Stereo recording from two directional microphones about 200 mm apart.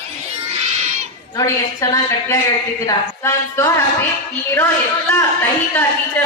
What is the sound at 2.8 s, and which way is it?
A woman's voice, 15° left (ahead or behind).